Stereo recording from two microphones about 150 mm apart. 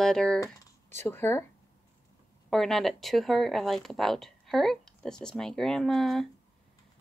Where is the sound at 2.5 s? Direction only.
Centre (ahead or behind).